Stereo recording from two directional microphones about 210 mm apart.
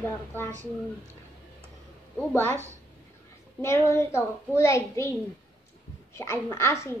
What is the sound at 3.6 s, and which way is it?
A child's voice, 10° left (ahead or behind).